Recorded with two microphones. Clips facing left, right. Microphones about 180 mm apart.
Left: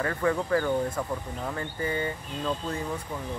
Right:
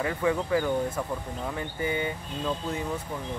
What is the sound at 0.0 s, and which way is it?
Speech, 10° right (ahead or behind).